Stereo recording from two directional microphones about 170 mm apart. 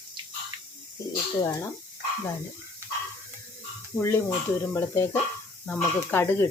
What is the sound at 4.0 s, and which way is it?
Speech, 15° left (ahead or behind).